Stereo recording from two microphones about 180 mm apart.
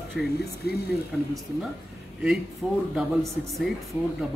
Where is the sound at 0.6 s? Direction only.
60° left (ahead or behind).